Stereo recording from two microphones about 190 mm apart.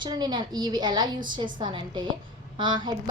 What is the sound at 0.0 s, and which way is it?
A woman's voice, 20° right (ahead or behind).